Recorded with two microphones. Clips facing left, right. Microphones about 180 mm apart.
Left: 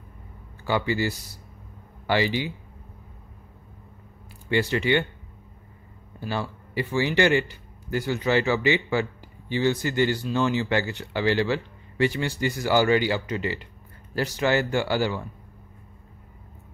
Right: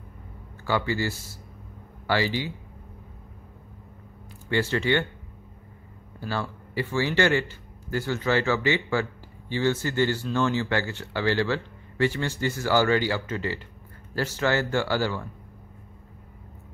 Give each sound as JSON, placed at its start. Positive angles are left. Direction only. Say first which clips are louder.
{"t": 0.7, "sound": "speech", "louder": "left 1 dB", "side_deg": 15}
{"t": 4.5, "sound": "speech", "louder": "left 1 dB", "side_deg": 15}
{"t": 6.1, "sound": "speech", "louder": "left 1 dB", "side_deg": 15}